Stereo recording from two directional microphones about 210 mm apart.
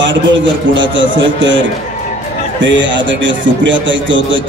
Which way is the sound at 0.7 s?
60° right (ahead or behind).